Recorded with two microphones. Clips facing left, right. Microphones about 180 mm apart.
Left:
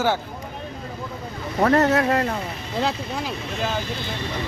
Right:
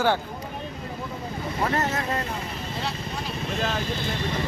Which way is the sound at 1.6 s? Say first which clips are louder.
Left 9 dB; 65° left (ahead or behind).